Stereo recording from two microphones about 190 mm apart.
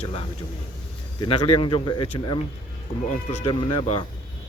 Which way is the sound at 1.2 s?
25° left (ahead or behind).